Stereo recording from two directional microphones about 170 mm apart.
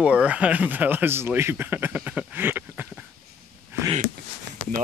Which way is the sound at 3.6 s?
15° right (ahead or behind).